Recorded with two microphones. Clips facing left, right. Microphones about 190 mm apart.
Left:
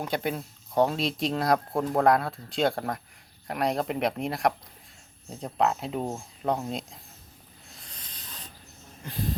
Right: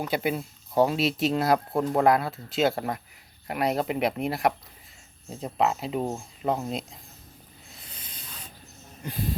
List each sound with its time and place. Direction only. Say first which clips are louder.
0.0 s speech: right 2 dB; 5° right (ahead or behind)
7.7 s hiss: right 1 dB; 5° right (ahead or behind)
9.0 s speech: right 3 dB; 15° right (ahead or behind)